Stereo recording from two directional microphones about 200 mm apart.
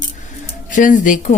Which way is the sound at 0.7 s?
40° left (ahead or behind).